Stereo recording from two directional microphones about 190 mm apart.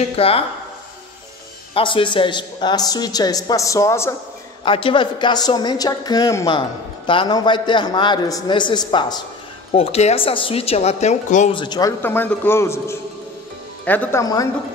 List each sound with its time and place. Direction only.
0.0 s speech: 30° left (ahead or behind)
1.7 s a woman's voice: 25° left (ahead or behind)
4.6 s a woman's voice: 25° left (ahead or behind)
11.5 s a woman's voice: 25° left (ahead or behind)
12.0 s a man's voice: 10° left (ahead or behind)